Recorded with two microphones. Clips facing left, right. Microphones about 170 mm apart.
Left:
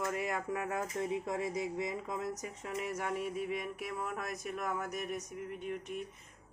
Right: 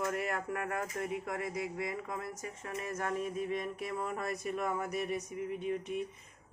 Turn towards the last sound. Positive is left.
turn(degrees=0)  # may be behind; listen again after turning